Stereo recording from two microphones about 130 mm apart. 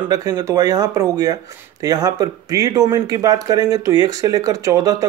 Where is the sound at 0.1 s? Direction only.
25° right (ahead or behind).